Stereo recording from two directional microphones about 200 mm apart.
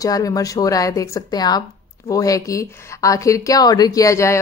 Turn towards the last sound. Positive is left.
turn(degrees=15)  # may be behind; listen again after turning